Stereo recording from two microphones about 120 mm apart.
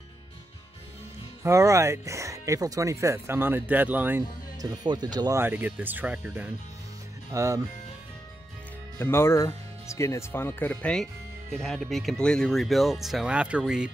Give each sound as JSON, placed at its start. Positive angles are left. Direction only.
{"t": 1.4, "sound": "speech", "side_deg": -25}
{"t": 4.6, "sound": "speech", "side_deg": -35}
{"t": 5.4, "sound": "speech", "side_deg": -15}
{"t": 7.3, "sound": "speech", "side_deg": -25}
{"t": 8.9, "sound": "speech", "side_deg": 20}